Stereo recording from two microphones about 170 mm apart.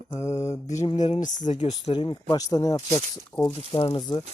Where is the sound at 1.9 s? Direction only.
30° left (ahead or behind).